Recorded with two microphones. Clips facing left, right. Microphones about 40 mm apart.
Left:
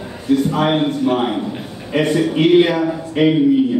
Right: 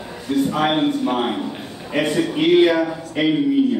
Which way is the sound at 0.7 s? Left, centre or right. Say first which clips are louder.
Left 2 dB; centre.